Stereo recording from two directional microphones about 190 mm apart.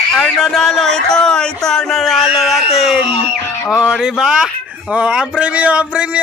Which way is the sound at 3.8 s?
5° right (ahead or behind).